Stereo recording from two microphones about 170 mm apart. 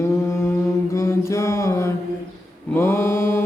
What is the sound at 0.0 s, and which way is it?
Mantra, 15° left (ahead or behind).